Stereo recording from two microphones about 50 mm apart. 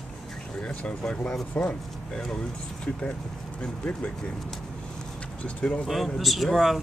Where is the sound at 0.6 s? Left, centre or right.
Left.